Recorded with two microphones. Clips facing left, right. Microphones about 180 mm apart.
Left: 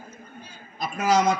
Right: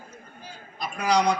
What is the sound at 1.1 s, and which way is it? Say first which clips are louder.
Speech: left 1 dB; 5° left (ahead or behind).